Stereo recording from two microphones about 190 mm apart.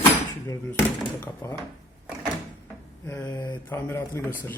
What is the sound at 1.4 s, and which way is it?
Speech, 10° left (ahead or behind).